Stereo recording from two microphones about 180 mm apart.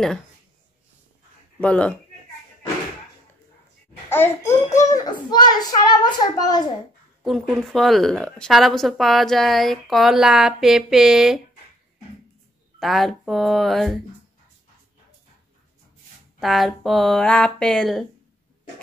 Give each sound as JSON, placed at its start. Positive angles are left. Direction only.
{"t": 1.6, "sound": "a child's voice", "side_deg": 5}
{"t": 4.1, "sound": "a child's voice", "side_deg": 15}
{"t": 7.2, "sound": "a woman's voice", "side_deg": 0}
{"t": 12.7, "sound": "a woman's voice", "side_deg": 0}
{"t": 16.3, "sound": "a woman's voice", "side_deg": 0}